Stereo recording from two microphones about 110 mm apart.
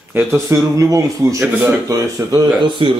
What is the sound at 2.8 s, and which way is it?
Speech, 50° right (ahead or behind).